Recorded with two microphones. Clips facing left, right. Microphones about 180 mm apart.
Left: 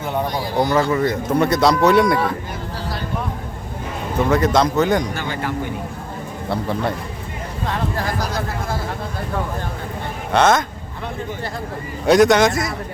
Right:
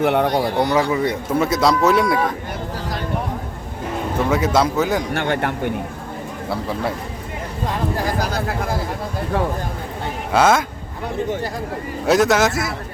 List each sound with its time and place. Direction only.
0.0 s speech: 70° right (ahead or behind)
0.7 s a man's voice: 10° right (ahead or behind)
4.3 s speech: 5° right (ahead or behind)
5.1 s speech: 65° right (ahead or behind)
10.3 s speech: 10° right (ahead or behind)
12.0 s a man's voice: 5° right (ahead or behind)